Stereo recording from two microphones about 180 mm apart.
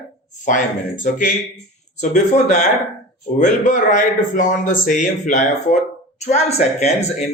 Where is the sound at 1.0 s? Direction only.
45° left (ahead or behind).